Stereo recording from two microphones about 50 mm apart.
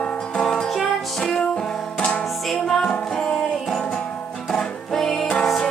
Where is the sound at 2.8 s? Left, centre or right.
Centre.